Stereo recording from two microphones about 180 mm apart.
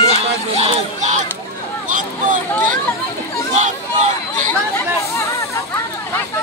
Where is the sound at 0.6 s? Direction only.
40° right (ahead or behind).